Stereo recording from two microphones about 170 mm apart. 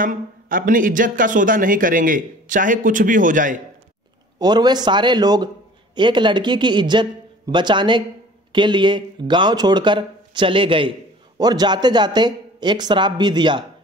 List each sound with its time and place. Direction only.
0.0 s speech: 55° right (ahead or behind)
4.4 s a man's voice: 25° right (ahead or behind)